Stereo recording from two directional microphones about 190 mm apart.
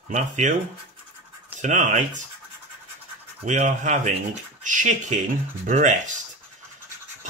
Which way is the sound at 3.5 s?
40° right (ahead or behind).